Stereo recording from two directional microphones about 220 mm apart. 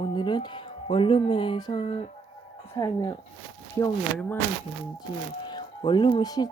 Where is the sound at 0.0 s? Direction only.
20° left (ahead or behind).